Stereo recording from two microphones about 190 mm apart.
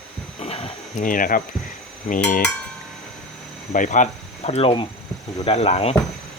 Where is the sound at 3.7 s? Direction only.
40° left (ahead or behind).